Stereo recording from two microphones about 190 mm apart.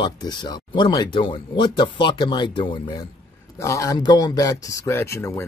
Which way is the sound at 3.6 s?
15° left (ahead or behind).